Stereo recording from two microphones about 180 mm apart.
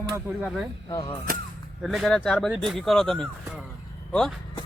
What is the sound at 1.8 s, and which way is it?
Speech, centre (ahead or behind).